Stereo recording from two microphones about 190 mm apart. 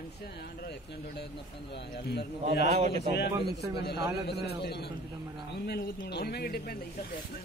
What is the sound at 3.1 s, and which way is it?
A man's voice, 60° left (ahead or behind).